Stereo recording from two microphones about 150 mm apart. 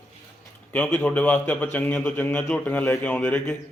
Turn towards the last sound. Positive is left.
turn(degrees=10)  # may be behind; listen again after turning